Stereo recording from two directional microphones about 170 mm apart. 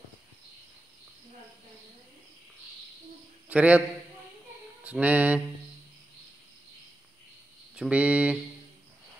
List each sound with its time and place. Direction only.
3.4 s speech: 10° right (ahead or behind)
4.8 s speech: 10° right (ahead or behind)
7.7 s speech: 5° right (ahead or behind)